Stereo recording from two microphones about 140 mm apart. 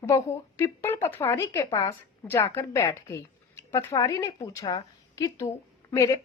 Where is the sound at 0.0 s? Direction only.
20° left (ahead or behind).